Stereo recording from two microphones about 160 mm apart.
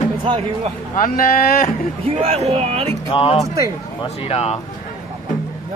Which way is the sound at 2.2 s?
40° right (ahead or behind).